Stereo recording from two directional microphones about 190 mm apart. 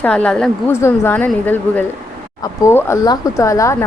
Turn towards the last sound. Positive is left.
turn(degrees=15)  # may be behind; listen again after turning